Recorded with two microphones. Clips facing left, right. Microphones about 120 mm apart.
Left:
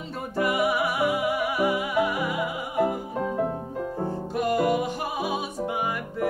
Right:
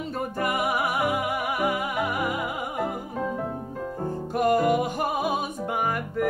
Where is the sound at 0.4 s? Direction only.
50° right (ahead or behind).